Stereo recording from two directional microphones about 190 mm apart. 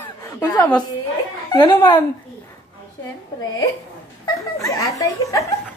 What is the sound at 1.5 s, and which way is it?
Speech, 25° left (ahead or behind).